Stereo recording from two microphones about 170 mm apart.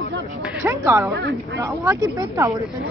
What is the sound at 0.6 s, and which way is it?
Speech, 15° right (ahead or behind).